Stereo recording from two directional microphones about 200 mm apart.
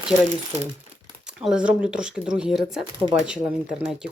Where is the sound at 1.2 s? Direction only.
5° right (ahead or behind).